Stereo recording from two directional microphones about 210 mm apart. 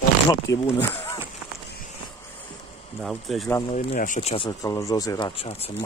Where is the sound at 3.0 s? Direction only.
Centre (ahead or behind).